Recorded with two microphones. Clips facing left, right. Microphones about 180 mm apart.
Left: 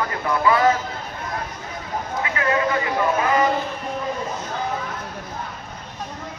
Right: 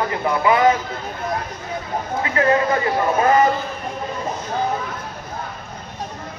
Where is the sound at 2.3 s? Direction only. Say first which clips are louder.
Right 4 dB; 35° right (ahead or behind).